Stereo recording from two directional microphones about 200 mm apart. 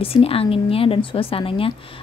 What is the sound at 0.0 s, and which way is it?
A woman's voice, 30° left (ahead or behind).